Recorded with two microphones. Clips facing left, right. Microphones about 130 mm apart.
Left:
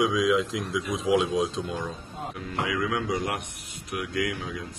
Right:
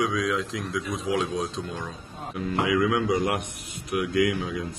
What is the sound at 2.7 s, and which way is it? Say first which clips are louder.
Speech: right 5 dB; 15° right (ahead or behind).